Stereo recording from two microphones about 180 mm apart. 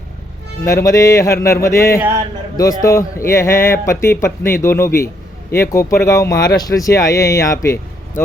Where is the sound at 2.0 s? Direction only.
10° right (ahead or behind).